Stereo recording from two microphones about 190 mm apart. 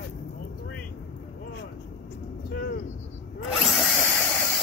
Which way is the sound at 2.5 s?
55° left (ahead or behind).